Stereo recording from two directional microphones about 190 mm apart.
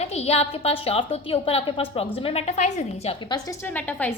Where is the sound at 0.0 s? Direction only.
35° left (ahead or behind); by 4.1 s 10° left (ahead or behind).